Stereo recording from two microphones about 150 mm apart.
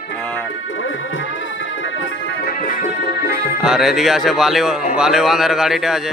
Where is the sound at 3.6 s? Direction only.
Centre (ahead or behind).